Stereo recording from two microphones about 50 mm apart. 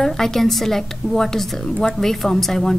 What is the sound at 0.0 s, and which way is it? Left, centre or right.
A woman's voice, centre.